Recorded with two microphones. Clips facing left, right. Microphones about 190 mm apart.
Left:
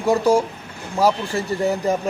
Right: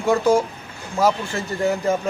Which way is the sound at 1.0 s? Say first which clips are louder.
Left 2 dB; 35° left (ahead or behind).